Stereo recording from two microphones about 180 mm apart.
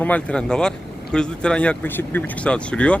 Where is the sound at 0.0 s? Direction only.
5° left (ahead or behind).